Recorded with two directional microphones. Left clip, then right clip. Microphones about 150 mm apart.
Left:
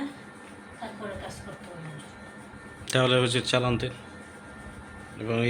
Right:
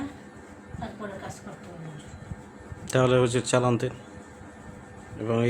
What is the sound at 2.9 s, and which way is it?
Speech, 25° right (ahead or behind).